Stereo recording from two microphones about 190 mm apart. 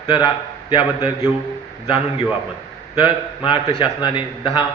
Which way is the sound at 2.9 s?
25° left (ahead or behind).